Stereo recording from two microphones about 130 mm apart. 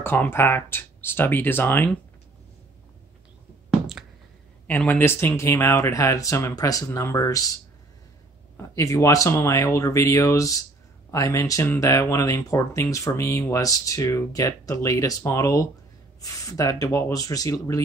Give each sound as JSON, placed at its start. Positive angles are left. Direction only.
{"t": 0.0, "sound": "speech", "side_deg": 15}
{"t": 4.6, "sound": "speech", "side_deg": 15}
{"t": 8.7, "sound": "speech", "side_deg": 25}